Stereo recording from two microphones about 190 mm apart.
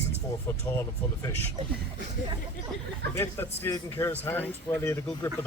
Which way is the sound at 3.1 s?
15° left (ahead or behind).